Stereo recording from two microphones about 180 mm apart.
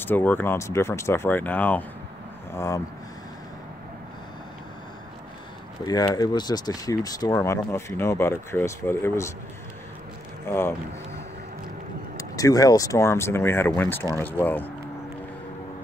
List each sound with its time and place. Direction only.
0.0 s speech: 10° left (ahead or behind)
5.9 s speech: 20° left (ahead or behind)
10.5 s speech: 15° left (ahead or behind)
12.2 s speech: 20° left (ahead or behind)